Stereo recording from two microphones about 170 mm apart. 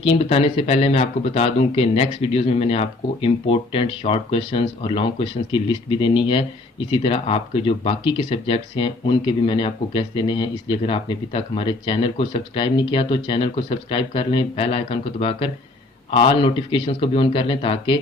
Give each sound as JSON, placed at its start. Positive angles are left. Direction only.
{"t": 0.0, "sound": "speech", "side_deg": 35}